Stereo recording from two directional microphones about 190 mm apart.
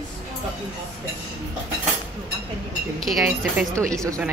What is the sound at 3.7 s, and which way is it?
Speech, 15° right (ahead or behind).